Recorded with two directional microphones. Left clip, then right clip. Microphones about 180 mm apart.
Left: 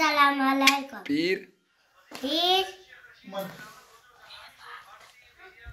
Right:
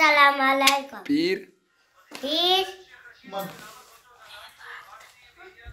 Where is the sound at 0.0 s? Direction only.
15° right (ahead or behind).